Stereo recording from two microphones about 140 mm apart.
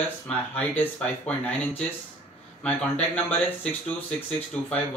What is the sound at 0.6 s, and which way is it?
Speech, 10° left (ahead or behind).